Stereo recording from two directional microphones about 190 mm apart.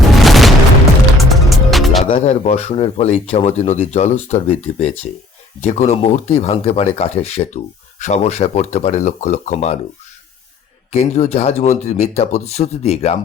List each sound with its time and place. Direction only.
0.2 s boom: centre (ahead or behind)
1.3 s music: centre (ahead or behind)
2.0 s speech: 35° left (ahead or behind)
10.9 s speech: 35° left (ahead or behind)